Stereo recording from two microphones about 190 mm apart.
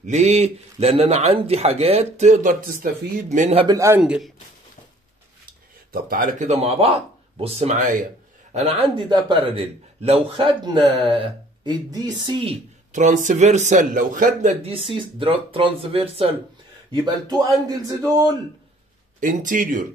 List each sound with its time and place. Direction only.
0.0 s a man's voice: 35° right (ahead or behind)
3.6 s a man's voice: 15° right (ahead or behind)
4.0 s speech: 5° right (ahead or behind)
5.9 s a man's voice: 50° right (ahead or behind)
8.5 s a man's voice: 30° right (ahead or behind)
12.9 s a man's voice: 40° right (ahead or behind)
14.6 s a man's voice: 30° right (ahead or behind)
19.1 s speech: 45° right (ahead or behind)